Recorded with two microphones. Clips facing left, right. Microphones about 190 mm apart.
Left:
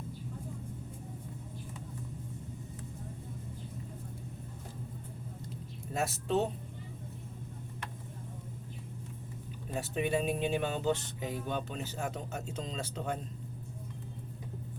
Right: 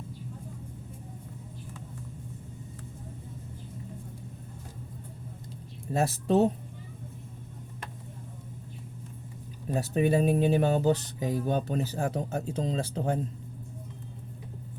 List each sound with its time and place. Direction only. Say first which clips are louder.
5.9 s speech: right 6 dB; 35° right (ahead or behind)
9.7 s speech: right 7 dB; 35° right (ahead or behind)